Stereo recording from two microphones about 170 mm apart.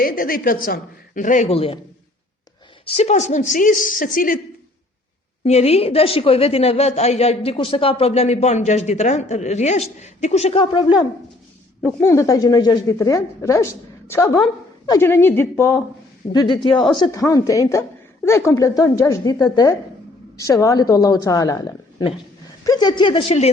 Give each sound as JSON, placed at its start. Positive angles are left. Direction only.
{"t": 0.0, "sound": "speech", "side_deg": 60}
{"t": 2.8, "sound": "speech", "side_deg": 35}
{"t": 5.4, "sound": "a woman's voice", "side_deg": 40}
{"t": 11.9, "sound": "a woman's voice", "side_deg": 15}
{"t": 16.3, "sound": "a woman's voice", "side_deg": 25}
{"t": 16.7, "sound": "a woman's voice", "side_deg": 0}
{"t": 17.0, "sound": "a woman's voice", "side_deg": 20}